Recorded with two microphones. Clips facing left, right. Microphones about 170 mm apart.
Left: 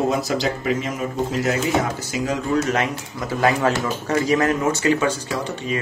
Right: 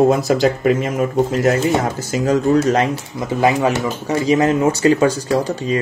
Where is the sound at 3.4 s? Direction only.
15° right (ahead or behind).